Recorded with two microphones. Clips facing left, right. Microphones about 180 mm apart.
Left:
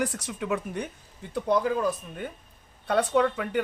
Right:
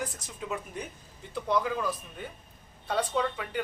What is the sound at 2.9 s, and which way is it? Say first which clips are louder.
Speech: left 6 dB; 60° left (ahead or behind).